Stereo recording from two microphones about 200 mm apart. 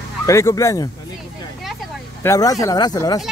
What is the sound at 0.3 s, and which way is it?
Speech, 15° left (ahead or behind).